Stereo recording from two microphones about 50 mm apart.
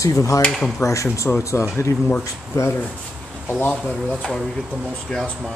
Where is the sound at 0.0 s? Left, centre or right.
Left.